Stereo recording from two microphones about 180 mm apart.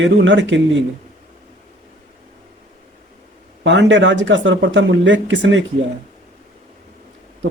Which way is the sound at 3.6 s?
85° right.